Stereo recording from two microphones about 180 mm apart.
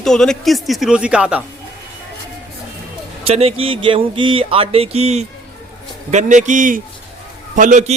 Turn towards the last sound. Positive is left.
turn(degrees=-40)  # may be behind; listen again after turning